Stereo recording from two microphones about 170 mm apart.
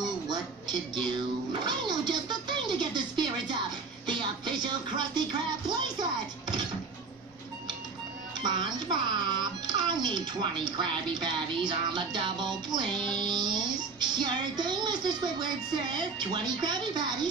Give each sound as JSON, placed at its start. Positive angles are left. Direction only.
{"t": 0.3, "sound": "a sound", "side_deg": -25}
{"t": 1.7, "sound": "music", "side_deg": -25}
{"t": 8.4, "sound": "music", "side_deg": -25}